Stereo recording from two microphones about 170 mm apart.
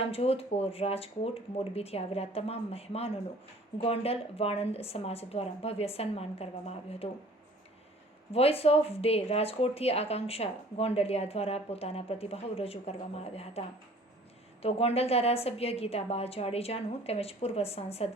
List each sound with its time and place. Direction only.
0.1 s speech: 35° left (ahead or behind)
8.3 s speech: 35° left (ahead or behind)